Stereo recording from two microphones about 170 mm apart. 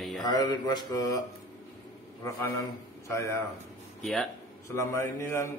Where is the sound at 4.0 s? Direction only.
Centre (ahead or behind).